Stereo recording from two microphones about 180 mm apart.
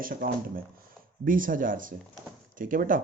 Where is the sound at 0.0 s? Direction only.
50° right (ahead or behind).